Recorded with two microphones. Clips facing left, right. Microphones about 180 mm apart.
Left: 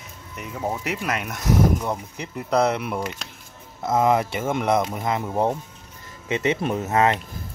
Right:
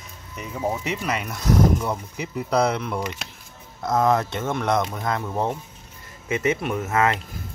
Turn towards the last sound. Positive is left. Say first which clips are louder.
# left 2 dB
turn(degrees=25)  # may be behind; listen again after turning